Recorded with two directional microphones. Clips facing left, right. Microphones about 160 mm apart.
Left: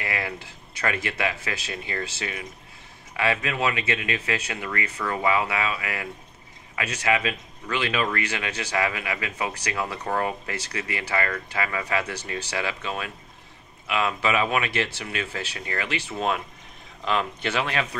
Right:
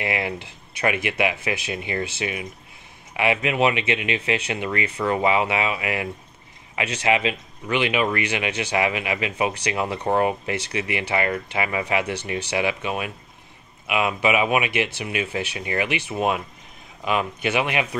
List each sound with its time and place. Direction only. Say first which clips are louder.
0.0 s speech: right 5 dB; 20° right (ahead or behind)